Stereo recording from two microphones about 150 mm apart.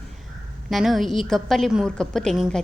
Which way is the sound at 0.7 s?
Centre (ahead or behind).